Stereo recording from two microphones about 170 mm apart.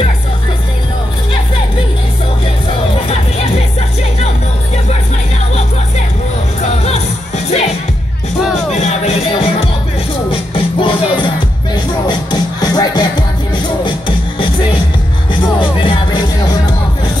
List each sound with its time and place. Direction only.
6.8 s music: 40° left (ahead or behind)
8.7 s music: 40° left (ahead or behind)
15.8 s music: 30° left (ahead or behind)